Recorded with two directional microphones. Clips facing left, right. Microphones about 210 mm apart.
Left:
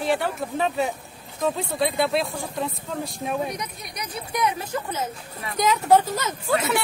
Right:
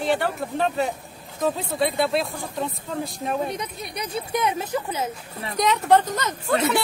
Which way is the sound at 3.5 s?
25° right (ahead or behind).